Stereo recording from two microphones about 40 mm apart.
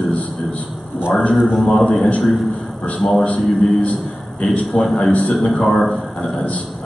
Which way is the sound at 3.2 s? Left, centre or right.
Left.